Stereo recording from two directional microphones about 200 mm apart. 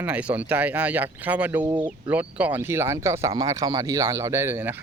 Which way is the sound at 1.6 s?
20° right (ahead or behind).